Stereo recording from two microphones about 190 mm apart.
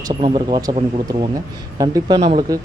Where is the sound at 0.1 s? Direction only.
25° right (ahead or behind).